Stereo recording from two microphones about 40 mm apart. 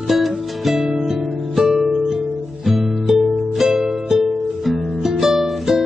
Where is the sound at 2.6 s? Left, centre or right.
Centre.